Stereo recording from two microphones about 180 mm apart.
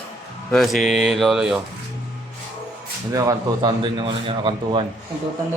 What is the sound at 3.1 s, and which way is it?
A man's voice, 20° right (ahead or behind).